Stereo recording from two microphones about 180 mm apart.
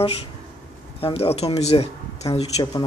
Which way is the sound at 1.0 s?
35° left (ahead or behind).